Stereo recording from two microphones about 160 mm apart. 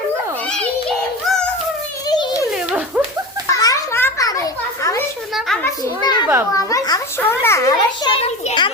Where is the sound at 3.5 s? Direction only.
20° left (ahead or behind).